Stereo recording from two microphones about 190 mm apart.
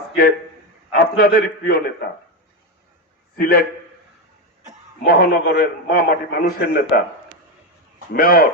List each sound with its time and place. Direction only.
0.9 s a man's voice: 50° left (ahead or behind)
3.3 s a man's voice: 50° left (ahead or behind)
5.0 s a man's voice: 50° left (ahead or behind)
8.1 s a man's voice: 50° left (ahead or behind)